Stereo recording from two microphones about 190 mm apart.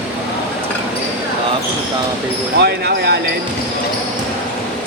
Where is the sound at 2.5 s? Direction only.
60° right (ahead or behind).